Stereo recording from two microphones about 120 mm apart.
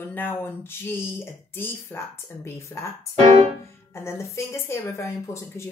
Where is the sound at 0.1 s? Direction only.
15° left (ahead or behind).